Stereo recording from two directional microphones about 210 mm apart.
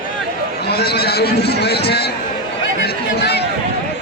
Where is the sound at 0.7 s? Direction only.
50° left (ahead or behind).